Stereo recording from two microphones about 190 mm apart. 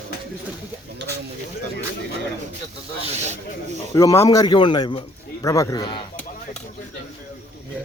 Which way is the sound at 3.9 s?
15° left (ahead or behind).